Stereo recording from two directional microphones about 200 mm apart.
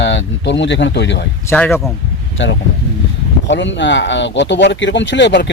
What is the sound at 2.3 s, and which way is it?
Speech, 65° left (ahead or behind).